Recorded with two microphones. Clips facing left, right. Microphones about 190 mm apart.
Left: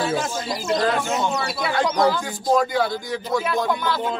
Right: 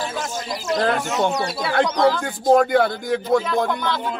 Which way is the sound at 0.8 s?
60° right (ahead or behind).